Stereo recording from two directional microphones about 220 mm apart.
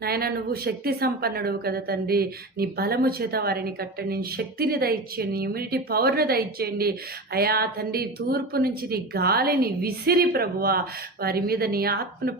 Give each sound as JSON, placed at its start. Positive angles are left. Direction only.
{"t": 0.0, "sound": "speech", "side_deg": -45}